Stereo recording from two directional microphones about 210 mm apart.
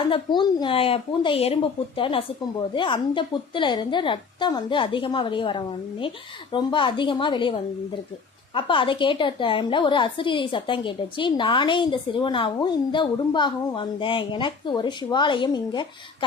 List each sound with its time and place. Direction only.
0.0 s a woman's voice: 25° left (ahead or behind)
8.5 s a woman's voice: 25° left (ahead or behind)